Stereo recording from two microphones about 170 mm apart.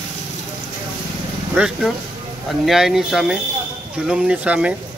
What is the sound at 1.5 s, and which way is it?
Speech, 5° right (ahead or behind).